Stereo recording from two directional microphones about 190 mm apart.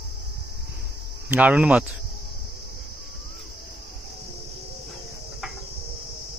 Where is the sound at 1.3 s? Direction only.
10° right (ahead or behind).